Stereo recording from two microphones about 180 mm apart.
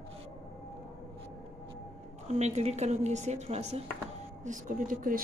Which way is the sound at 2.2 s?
40° right (ahead or behind).